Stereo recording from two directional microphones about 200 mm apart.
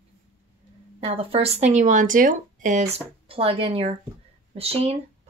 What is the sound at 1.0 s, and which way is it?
Speech, 30° right (ahead or behind).